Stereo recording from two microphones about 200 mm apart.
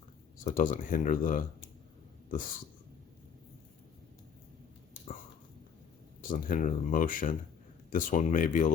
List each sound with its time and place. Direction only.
0.3 s speech: 40° left (ahead or behind)
6.2 s speech: 40° left (ahead or behind)